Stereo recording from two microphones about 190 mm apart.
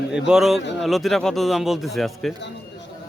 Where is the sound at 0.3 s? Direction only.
Centre (ahead or behind).